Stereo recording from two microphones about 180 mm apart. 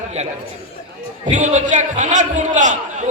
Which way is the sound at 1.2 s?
40° right (ahead or behind).